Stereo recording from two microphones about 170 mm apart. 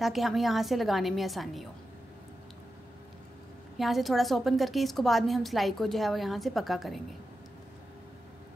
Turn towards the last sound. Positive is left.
turn(degrees=0)  # may be behind; listen again after turning